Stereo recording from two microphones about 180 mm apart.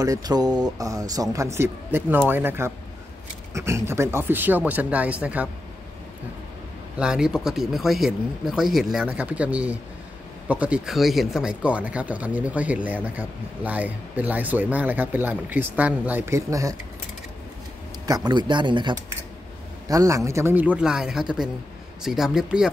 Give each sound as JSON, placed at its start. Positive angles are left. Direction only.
{"t": 0.0, "sound": "speech", "side_deg": -20}
{"t": 7.0, "sound": "speech", "side_deg": -5}
{"t": 18.0, "sound": "speech", "side_deg": -20}